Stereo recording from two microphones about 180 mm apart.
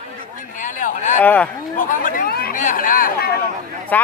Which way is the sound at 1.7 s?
50° left (ahead or behind).